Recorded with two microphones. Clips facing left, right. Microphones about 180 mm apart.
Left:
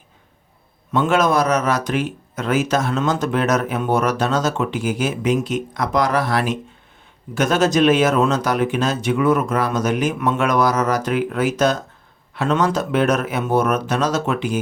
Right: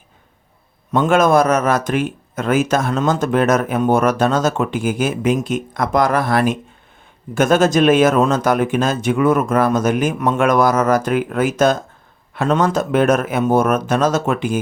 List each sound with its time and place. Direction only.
0.9 s speech: 50° right (ahead or behind)